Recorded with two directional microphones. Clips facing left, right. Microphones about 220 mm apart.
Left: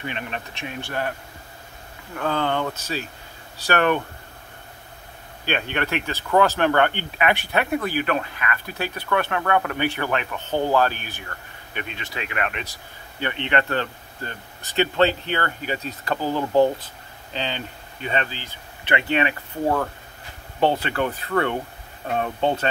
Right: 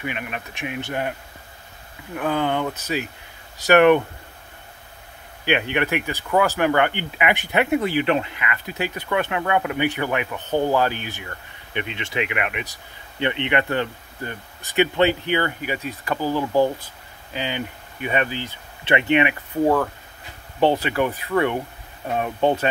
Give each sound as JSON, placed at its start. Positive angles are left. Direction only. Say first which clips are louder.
{"t": 0.0, "sound": "speech", "louder": "right 1 dB", "side_deg": -10}
{"t": 2.1, "sound": "speech", "louder": "right 1 dB", "side_deg": -15}
{"t": 5.4, "sound": "speech", "louder": "right 4 dB", "side_deg": -15}
{"t": 16.2, "sound": "speech", "louder": "left 1 dB", "side_deg": 15}
{"t": 17.3, "sound": "speech", "louder": "right 2 dB", "side_deg": -10}
{"t": 20.6, "sound": "speech", "louder": "right 2 dB", "side_deg": -15}